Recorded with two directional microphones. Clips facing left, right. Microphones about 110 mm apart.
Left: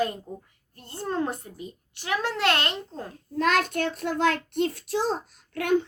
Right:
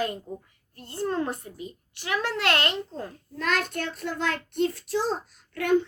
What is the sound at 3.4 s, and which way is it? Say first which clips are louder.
A child's voice: left 4 dB; 75° left (ahead or behind).